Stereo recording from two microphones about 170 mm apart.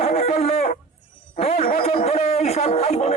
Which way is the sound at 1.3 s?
40° left (ahead or behind).